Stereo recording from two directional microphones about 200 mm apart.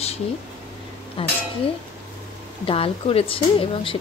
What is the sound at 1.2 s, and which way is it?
Speech, 25° left (ahead or behind).